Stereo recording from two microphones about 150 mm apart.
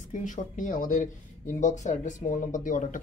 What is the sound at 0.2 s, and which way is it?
Speech, 60° left (ahead or behind).